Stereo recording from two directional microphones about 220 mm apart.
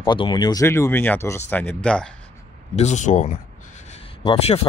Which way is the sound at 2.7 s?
30° left (ahead or behind).